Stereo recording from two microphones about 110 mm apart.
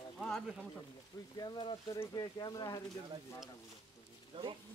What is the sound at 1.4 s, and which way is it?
Speech, 45° left (ahead or behind).